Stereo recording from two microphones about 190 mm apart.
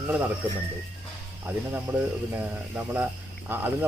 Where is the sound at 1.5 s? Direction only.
10° right (ahead or behind).